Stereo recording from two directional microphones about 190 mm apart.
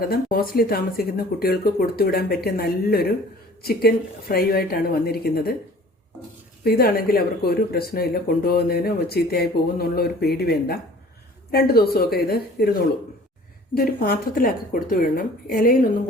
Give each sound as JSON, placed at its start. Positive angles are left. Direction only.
{"t": 0.0, "sound": "speech", "side_deg": 50}
{"t": 6.7, "sound": "a woman's voice", "side_deg": 50}
{"t": 13.7, "sound": "speech", "side_deg": 50}